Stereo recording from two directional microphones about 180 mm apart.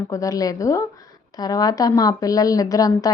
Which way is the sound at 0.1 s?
20° left (ahead or behind).